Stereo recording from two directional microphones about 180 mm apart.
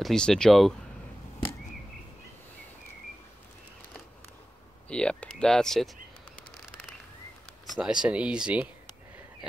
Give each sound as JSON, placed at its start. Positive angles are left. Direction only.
{"t": 0.0, "sound": "speech", "side_deg": 5}
{"t": 4.8, "sound": "a sound", "side_deg": 5}
{"t": 7.8, "sound": "speech", "side_deg": -5}